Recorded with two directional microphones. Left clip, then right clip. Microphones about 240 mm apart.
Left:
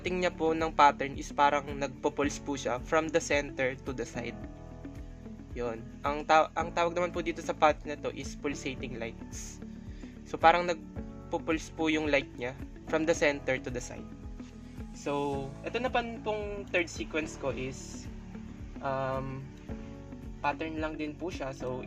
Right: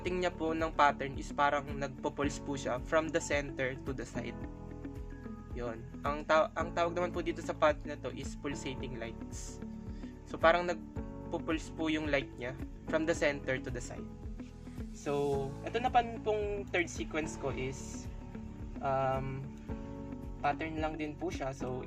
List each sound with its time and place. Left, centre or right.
0.0 s speech: left
5.5 s speech: left
10.3 s speech: left
15.0 s speech: left
18.8 s speech: centre
20.4 s speech: centre